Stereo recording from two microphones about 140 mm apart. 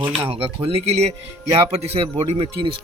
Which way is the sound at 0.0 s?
40° right (ahead or behind).